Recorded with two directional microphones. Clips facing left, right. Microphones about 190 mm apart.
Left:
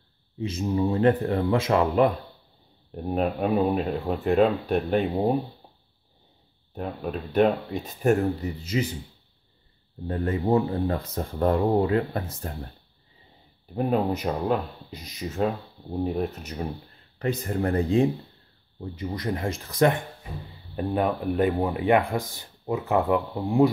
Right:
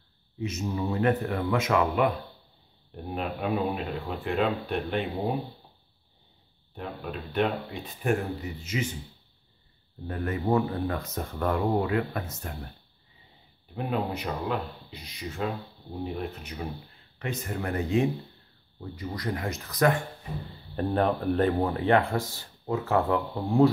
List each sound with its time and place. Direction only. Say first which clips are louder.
0.4 s speech: left 5 dB; 30° left (ahead or behind)
6.7 s speech: left 5 dB; 45° left (ahead or behind)
10.0 s speech: left 3 dB; 30° left (ahead or behind)
13.7 s speech: left 6 dB; 45° left (ahead or behind)
17.2 s speech: left 6 dB; 35° left (ahead or behind)
18.9 s speech: left 3 dB; 20° left (ahead or behind)
20.7 s speech: even; 10° left (ahead or behind)